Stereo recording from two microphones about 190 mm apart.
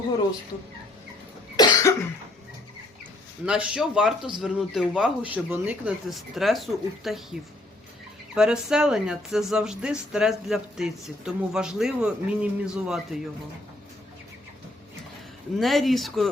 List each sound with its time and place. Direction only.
1.5 s cough: 20° left (ahead or behind)
3.4 s speech: 5° right (ahead or behind)
8.4 s speech: 5° right (ahead or behind)
15.5 s speech: centre (ahead or behind)